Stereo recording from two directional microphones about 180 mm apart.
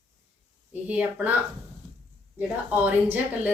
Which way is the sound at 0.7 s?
10° right (ahead or behind).